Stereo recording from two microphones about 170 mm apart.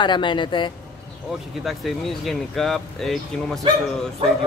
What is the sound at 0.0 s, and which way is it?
Speech, 25° left (ahead or behind).